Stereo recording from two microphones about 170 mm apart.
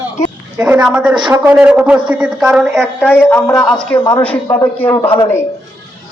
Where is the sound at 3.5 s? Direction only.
5° left (ahead or behind).